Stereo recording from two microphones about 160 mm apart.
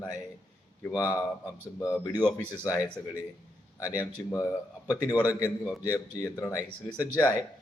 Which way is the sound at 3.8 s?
20° left (ahead or behind).